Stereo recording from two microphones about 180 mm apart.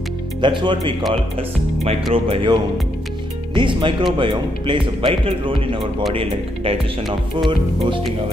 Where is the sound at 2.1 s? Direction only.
30° right (ahead or behind).